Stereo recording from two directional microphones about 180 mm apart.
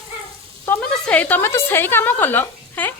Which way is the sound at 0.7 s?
5° left (ahead or behind).